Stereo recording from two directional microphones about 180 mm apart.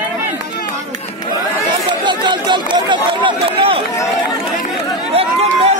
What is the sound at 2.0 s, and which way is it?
Run, 25° right (ahead or behind).